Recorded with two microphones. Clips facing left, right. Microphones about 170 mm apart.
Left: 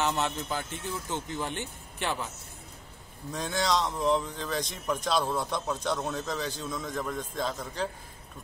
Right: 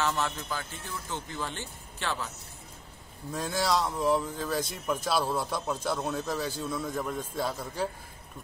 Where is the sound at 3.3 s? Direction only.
5° right (ahead or behind).